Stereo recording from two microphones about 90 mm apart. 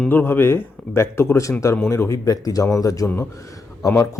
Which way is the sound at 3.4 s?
35° left (ahead or behind).